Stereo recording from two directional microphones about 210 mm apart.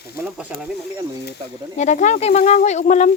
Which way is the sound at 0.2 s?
5° right (ahead or behind).